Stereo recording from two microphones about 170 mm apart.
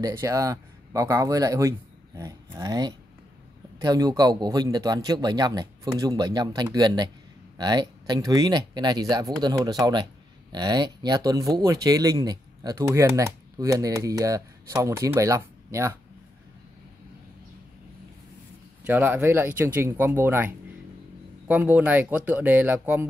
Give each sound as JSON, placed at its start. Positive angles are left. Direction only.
{"t": 0.0, "sound": "speech", "side_deg": -20}
{"t": 18.9, "sound": "speech", "side_deg": -10}